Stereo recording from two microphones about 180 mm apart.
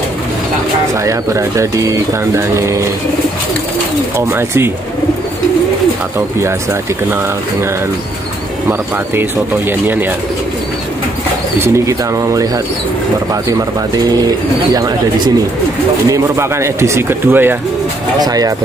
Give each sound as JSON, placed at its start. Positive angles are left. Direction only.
{"t": 1.0, "sound": "speech", "side_deg": -15}
{"t": 4.3, "sound": "speech", "side_deg": -15}
{"t": 6.1, "sound": "speech", "side_deg": -15}
{"t": 9.7, "sound": "speech", "side_deg": -10}
{"t": 11.6, "sound": "speech", "side_deg": -15}
{"t": 13.3, "sound": "speech", "side_deg": -20}
{"t": 16.1, "sound": "speech", "side_deg": -15}